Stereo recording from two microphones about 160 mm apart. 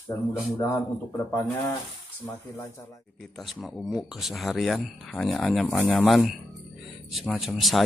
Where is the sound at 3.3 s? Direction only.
Centre (ahead or behind).